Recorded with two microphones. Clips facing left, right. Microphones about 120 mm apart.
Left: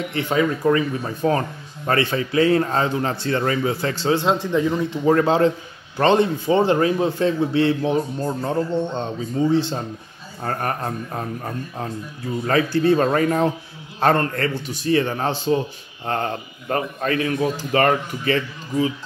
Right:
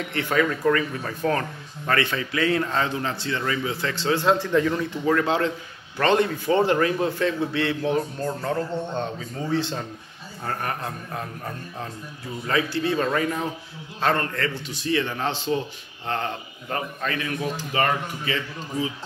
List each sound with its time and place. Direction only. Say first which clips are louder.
0.2 s a man's voice: left 2 dB; 25° left (ahead or behind)
4.0 s a man's voice: left 1 dB; 25° left (ahead or behind)
4.9 s a man's voice: left 6 dB; 35° left (ahead or behind)